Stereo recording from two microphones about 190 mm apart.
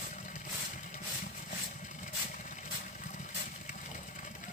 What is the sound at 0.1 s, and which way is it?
Vehicle, 40° left (ahead or behind).